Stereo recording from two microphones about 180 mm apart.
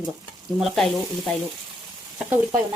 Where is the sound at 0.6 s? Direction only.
Centre (ahead or behind).